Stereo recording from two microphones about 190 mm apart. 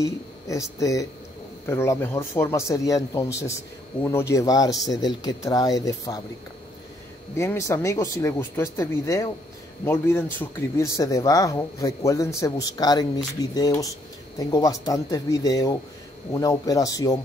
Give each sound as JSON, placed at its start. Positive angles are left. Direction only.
{"t": 0.0, "sound": "speech", "side_deg": 15}
{"t": 7.3, "sound": "speech", "side_deg": 15}